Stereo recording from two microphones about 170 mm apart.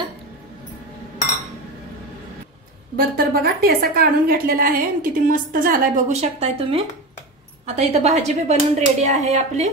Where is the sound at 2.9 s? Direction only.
65° right (ahead or behind).